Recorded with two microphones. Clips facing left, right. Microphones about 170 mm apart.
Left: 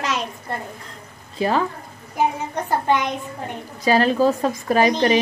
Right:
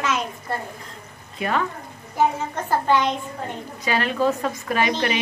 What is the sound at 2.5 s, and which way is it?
Speech, 20° left (ahead or behind).